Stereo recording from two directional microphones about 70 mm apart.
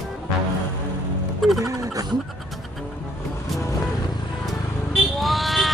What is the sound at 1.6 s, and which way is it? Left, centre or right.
Speech, right.